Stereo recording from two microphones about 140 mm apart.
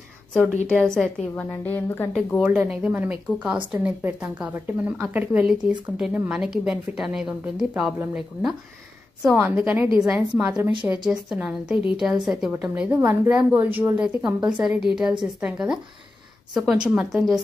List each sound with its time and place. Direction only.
0.7 s a woman's voice: 5° left (ahead or behind)
2.4 s a woman's voice: 10° right (ahead or behind)